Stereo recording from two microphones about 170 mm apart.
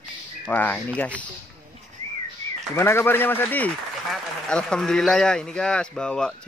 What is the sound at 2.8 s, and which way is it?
A man's voice, 15° left (ahead or behind).